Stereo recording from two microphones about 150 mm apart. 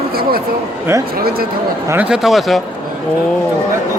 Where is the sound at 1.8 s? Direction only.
10° right (ahead or behind).